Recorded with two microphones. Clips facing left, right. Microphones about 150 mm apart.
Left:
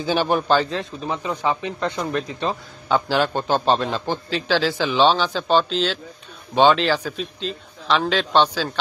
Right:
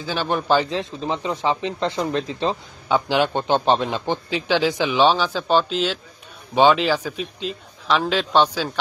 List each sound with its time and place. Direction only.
0.0 s a man's voice: 20° left (ahead or behind)
0.5 s a man's voice: 15° right (ahead or behind)